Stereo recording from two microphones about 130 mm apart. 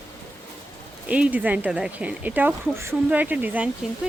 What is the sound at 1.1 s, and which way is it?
Speech, 10° right (ahead or behind).